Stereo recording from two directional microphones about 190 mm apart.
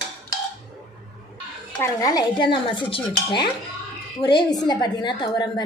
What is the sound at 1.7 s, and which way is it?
A woman's voice, 15° left (ahead or behind).